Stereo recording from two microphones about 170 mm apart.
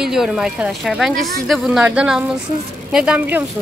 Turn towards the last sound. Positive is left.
turn(degrees=-10)  # may be behind; listen again after turning